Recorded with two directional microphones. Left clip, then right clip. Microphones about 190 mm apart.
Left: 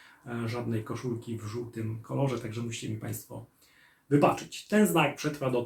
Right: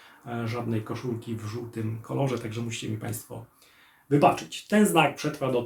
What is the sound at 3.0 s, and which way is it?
Speech, 15° right (ahead or behind).